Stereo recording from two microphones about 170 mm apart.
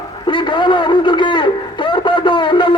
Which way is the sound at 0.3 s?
30° left (ahead or behind).